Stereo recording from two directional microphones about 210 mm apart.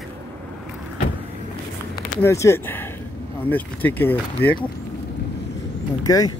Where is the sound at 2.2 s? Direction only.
15° left (ahead or behind).